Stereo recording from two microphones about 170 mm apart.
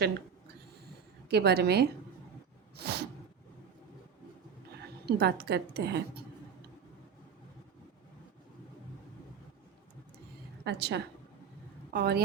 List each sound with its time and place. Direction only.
1.3 s a woman's voice: 70° right (ahead or behind)
2.7 s a sound: 75° right (ahead or behind)
4.7 s speech: 75° right (ahead or behind)
10.6 s a woman's voice: 75° right (ahead or behind)